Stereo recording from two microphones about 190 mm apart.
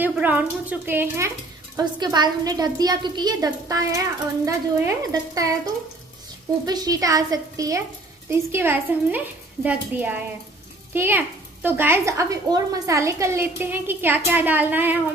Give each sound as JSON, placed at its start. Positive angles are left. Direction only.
{"t": 0.0, "sound": "a woman's voice", "side_deg": -10}
{"t": 6.6, "sound": "a woman's voice", "side_deg": -20}